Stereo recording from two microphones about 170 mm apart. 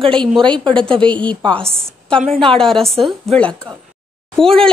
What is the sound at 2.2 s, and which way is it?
Speech, 35° right (ahead or behind).